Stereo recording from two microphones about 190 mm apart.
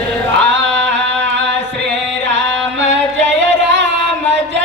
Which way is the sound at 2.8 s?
70° right (ahead or behind).